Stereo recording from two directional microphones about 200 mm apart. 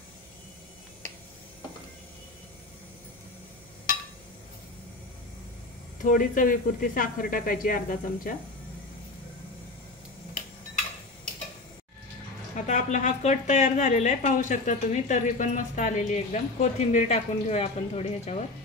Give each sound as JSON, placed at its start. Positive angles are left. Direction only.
{"t": 6.0, "sound": "speech", "side_deg": 40}
{"t": 12.5, "sound": "a woman's voice", "side_deg": 40}